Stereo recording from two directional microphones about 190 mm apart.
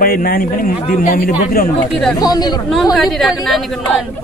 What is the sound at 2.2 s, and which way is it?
Speech, 20° left (ahead or behind).